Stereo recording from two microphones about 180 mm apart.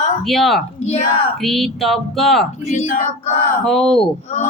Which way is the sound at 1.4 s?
Centre (ahead or behind).